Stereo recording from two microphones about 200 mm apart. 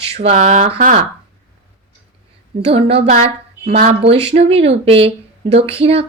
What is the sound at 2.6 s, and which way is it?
Speech, 30° right (ahead or behind).